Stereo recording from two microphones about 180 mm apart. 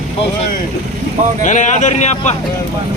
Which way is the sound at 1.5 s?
40° left (ahead or behind).